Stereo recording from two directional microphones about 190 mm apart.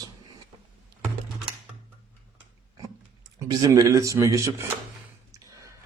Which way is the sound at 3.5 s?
20° right (ahead or behind).